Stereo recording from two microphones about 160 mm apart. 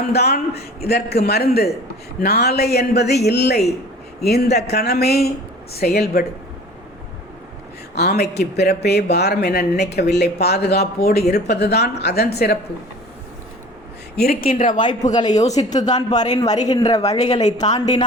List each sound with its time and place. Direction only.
0.1 s a man's voice: 90° left
4.2 s speech: 80° left
7.9 s speech: 85° left
14.2 s speech: 65° left (ahead or behind); by 15.2 s 50° left (ahead or behind)
15.5 s a man's voice: 25° left (ahead or behind)